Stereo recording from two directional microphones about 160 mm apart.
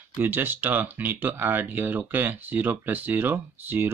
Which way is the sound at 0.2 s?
10° right (ahead or behind).